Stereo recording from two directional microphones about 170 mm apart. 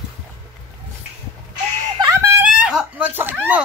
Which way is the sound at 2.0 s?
20° right (ahead or behind).